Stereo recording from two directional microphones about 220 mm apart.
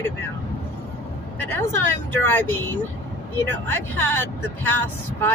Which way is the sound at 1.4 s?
10° left (ahead or behind).